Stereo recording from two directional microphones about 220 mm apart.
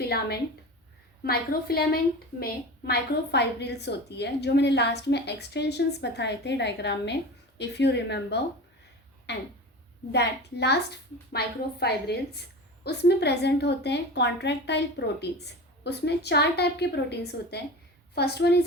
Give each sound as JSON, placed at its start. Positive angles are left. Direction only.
{"t": 0.0, "sound": "a woman's voice", "side_deg": 45}